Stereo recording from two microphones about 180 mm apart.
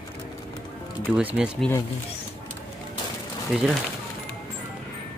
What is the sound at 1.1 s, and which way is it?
Speech, 5° right (ahead or behind).